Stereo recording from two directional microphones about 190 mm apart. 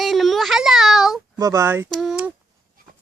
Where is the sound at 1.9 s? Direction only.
Centre (ahead or behind).